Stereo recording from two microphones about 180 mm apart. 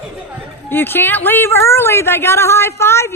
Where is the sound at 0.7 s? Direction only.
10° left (ahead or behind).